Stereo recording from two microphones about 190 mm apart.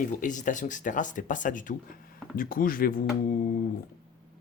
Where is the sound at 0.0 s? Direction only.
40° left (ahead or behind).